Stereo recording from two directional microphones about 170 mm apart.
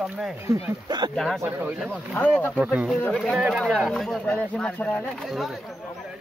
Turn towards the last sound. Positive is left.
turn(degrees=0)  # may be behind; listen again after turning